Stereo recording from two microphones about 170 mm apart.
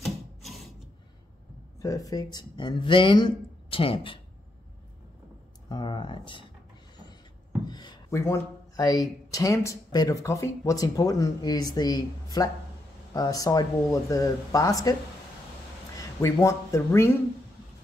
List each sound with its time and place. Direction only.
0.0 s a sound: centre (ahead or behind)
1.8 s speech: 20° left (ahead or behind)
5.7 s speech: 25° left (ahead or behind)
7.6 s a sound: 25° left (ahead or behind)
9.3 s speech: 20° left (ahead or behind)
16.0 s speech: 15° left (ahead or behind)